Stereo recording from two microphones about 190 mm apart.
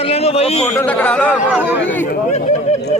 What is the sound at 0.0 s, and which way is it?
Speech, 30° left (ahead or behind).